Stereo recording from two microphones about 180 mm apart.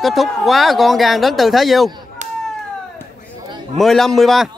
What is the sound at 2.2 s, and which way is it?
Cat, 40° right (ahead or behind).